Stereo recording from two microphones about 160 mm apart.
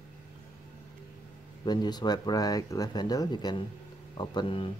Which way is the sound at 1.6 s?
25° left (ahead or behind).